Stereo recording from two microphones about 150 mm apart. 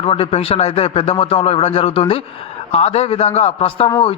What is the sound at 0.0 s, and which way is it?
A man's voice, 40° left (ahead or behind).